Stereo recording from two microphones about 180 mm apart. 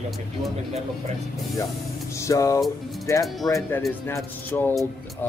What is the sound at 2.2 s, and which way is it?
Speech, 15° left (ahead or behind).